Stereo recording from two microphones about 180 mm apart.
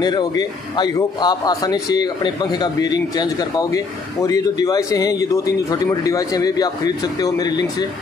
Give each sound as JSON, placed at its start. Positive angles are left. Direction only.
{"t": 0.0, "sound": "a man's voice", "side_deg": 20}